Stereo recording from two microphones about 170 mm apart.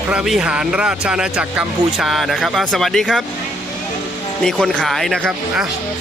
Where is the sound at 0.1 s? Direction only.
5° right (ahead or behind).